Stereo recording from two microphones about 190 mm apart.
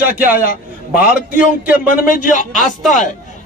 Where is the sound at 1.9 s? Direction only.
45° left (ahead or behind).